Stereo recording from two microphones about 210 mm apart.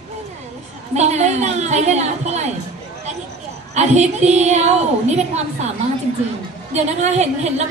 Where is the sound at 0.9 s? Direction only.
30° right (ahead or behind).